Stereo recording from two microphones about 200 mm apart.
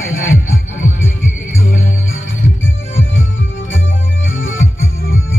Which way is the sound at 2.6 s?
75° left (ahead or behind).